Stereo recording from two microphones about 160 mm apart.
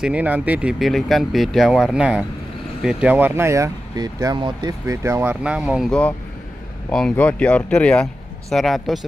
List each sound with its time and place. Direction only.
0.0 s speech: 10° right (ahead or behind)